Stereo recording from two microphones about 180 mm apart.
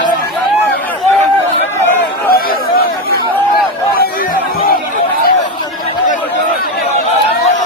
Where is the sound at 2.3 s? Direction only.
55° left (ahead or behind).